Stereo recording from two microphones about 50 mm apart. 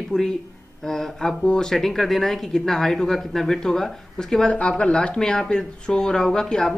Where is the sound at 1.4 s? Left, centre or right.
Centre.